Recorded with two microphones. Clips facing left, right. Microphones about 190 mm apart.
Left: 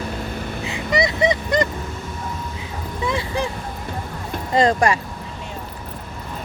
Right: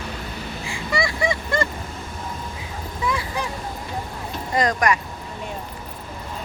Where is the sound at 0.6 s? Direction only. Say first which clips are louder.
Left 4 dB; 20° left (ahead or behind).